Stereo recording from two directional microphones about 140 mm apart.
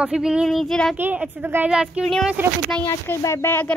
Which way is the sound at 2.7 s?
15° left (ahead or behind).